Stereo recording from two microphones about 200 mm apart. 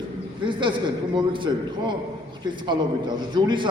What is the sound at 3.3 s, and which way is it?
Speech, 20° right (ahead or behind).